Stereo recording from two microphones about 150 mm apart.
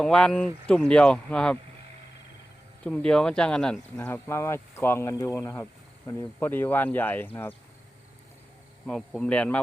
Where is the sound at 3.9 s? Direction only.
15° left (ahead or behind).